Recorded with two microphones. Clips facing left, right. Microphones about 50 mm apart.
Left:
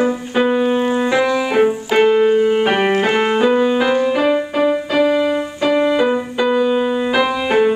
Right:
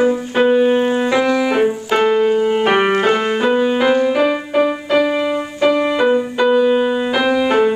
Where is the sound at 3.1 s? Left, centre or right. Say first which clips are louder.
Left 1 dB; centre.